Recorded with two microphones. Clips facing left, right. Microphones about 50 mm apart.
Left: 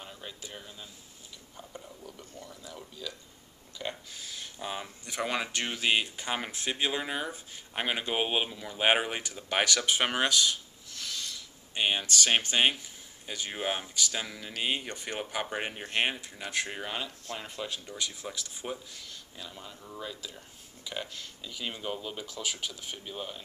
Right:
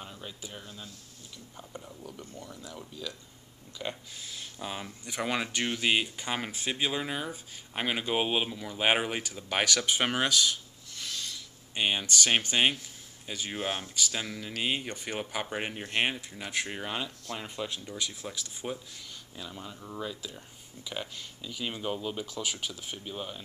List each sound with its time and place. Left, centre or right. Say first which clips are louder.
0.0 s speech: right 1 dB; centre
18.2 s speech: right 1 dB; centre